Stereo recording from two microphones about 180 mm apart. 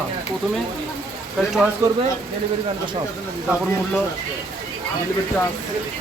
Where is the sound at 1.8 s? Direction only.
20° right (ahead or behind).